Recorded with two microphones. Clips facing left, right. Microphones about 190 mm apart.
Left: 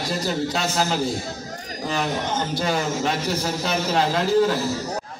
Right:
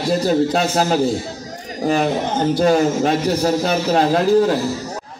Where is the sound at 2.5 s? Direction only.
50° right (ahead or behind).